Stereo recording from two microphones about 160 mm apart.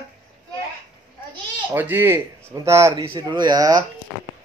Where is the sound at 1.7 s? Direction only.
10° right (ahead or behind).